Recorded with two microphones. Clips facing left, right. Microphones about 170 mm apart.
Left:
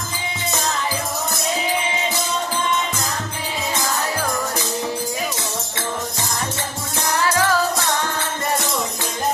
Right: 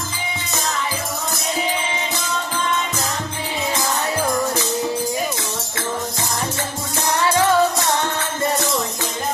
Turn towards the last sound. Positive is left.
turn(degrees=-25)  # may be behind; listen again after turning